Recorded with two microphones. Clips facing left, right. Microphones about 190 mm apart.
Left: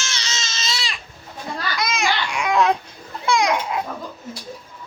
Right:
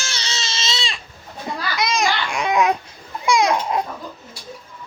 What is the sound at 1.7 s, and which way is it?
Children playing, 25° right (ahead or behind).